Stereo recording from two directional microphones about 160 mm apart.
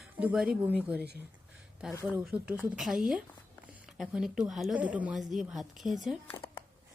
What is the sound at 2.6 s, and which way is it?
A woman's voice, 5° right (ahead or behind).